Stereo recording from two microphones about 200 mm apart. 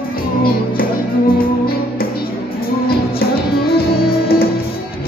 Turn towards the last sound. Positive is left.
turn(degrees=50)  # may be behind; listen again after turning